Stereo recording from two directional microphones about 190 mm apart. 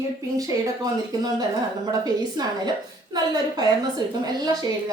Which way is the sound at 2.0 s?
20° right (ahead or behind).